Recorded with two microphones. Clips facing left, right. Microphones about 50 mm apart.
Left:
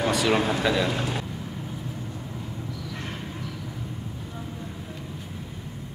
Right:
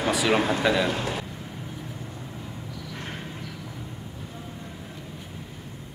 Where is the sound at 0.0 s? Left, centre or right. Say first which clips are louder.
Even; centre.